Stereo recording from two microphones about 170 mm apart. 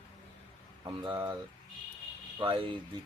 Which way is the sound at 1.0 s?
25° right (ahead or behind).